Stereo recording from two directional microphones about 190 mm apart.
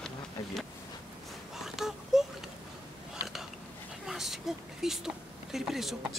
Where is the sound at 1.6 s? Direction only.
Centre (ahead or behind).